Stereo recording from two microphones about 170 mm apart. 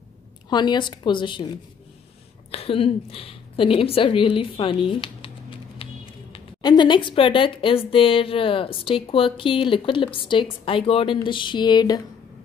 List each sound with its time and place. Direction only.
0.5 s a woman's voice: 25° left (ahead or behind)
2.5 s a woman's voice: 35° left (ahead or behind)